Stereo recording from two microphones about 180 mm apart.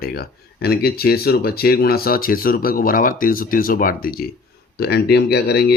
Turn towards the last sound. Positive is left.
turn(degrees=65)  # may be behind; listen again after turning